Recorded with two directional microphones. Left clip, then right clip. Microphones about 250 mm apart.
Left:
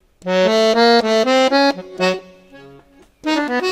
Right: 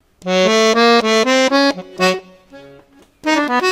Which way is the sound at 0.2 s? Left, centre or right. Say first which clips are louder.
Right 1 dB; right.